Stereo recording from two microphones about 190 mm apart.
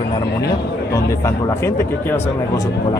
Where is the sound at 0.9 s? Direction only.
15° left (ahead or behind).